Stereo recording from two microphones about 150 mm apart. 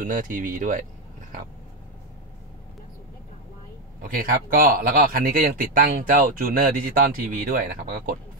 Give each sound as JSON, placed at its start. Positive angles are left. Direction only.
{"t": 0.0, "sound": "speech", "side_deg": -65}
{"t": 4.0, "sound": "speech", "side_deg": -70}